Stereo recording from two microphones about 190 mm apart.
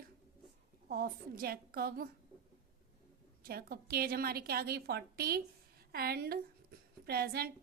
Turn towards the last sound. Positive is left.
turn(degrees=-55)  # may be behind; listen again after turning